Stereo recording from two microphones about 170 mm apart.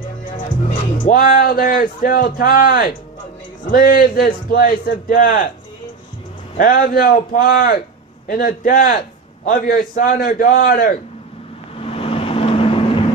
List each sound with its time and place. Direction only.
0.9 s a man's voice: 50° left (ahead or behind)
6.6 s a man's voice: 60° left (ahead or behind)
11.7 s vehicle: 35° left (ahead or behind)